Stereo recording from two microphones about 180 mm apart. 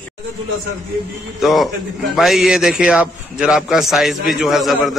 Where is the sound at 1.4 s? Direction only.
Centre (ahead or behind).